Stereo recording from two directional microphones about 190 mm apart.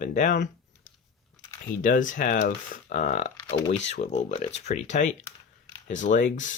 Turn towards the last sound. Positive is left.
turn(degrees=40)  # may be behind; listen again after turning